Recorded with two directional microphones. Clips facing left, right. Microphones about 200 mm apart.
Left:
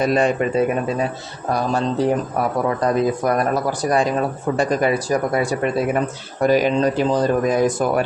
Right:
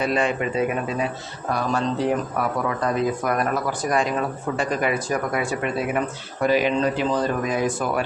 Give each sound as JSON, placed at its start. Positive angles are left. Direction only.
{"t": 0.0, "sound": "speech", "side_deg": 40}